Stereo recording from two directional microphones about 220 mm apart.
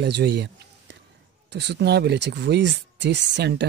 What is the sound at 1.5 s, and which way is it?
Speech, 50° right (ahead or behind).